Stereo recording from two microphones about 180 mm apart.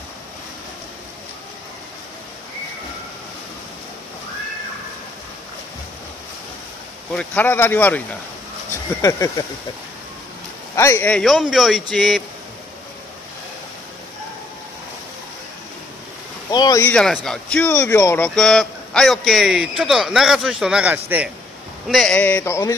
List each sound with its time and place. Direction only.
7.2 s speech: 10° left (ahead or behind)
10.8 s a man's voice: 15° left (ahead or behind)
16.4 s speech: 20° left (ahead or behind)
16.9 s speech: centre (ahead or behind)
18.3 s a man's voice: centre (ahead or behind)
21.8 s speech: centre (ahead or behind)